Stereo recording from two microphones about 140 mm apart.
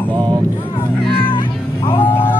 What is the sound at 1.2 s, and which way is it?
Cat, 35° left (ahead or behind).